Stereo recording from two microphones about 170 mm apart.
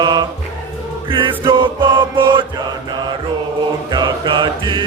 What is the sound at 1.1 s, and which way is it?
Music, 30° right (ahead or behind).